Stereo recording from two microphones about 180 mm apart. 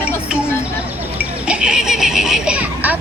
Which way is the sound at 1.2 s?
5° right (ahead or behind).